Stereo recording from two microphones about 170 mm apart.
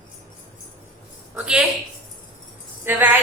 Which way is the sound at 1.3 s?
5° right (ahead or behind).